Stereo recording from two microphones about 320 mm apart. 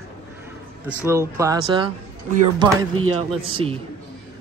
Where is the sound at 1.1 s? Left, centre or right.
Centre.